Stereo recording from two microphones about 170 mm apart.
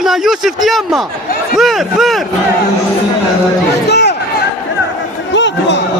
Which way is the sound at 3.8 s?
80° left.